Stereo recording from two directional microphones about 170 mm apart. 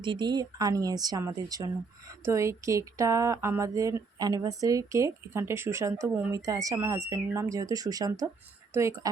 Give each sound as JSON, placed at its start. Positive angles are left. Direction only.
{"t": 0.0, "sound": "speech", "side_deg": -25}